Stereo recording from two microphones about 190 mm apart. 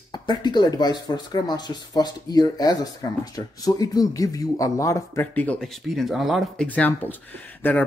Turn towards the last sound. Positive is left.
turn(degrees=10)  # may be behind; listen again after turning